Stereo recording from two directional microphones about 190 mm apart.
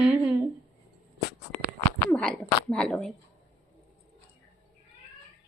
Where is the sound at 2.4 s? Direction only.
5° left (ahead or behind).